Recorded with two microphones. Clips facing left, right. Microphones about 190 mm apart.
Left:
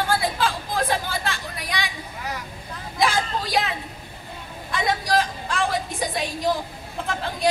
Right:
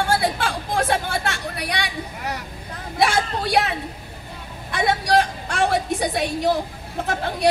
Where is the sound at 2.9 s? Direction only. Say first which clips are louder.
Right 2 dB; 70° right (ahead or behind).